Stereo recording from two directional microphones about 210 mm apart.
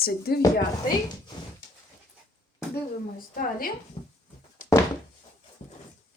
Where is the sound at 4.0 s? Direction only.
25° left (ahead or behind).